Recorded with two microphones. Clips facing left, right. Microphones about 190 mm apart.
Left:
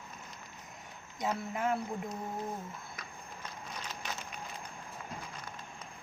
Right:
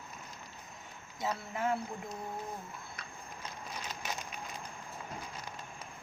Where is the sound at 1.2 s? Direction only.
15° left (ahead or behind).